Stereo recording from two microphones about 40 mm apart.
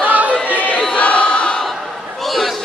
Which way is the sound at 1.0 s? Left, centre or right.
Left.